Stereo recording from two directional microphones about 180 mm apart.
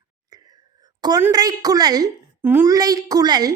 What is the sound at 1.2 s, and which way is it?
A woman's voice, 20° right (ahead or behind).